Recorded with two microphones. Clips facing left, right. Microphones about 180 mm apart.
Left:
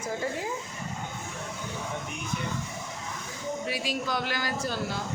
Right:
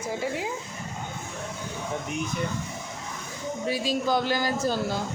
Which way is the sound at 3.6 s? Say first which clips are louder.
Right 8 dB; 30° right (ahead or behind).